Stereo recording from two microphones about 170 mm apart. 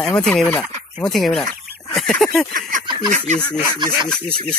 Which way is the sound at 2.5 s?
50° right (ahead or behind).